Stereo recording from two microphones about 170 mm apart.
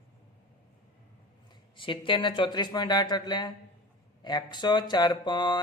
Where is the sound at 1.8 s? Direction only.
30° left (ahead or behind).